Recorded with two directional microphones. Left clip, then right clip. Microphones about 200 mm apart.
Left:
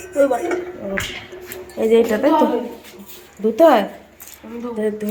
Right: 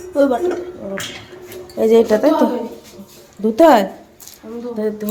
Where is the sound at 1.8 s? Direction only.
15° right (ahead or behind).